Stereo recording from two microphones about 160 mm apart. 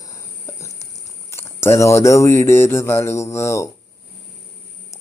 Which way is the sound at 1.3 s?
15° left (ahead or behind).